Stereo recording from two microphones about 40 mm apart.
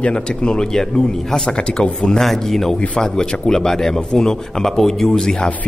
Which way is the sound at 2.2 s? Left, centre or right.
Centre.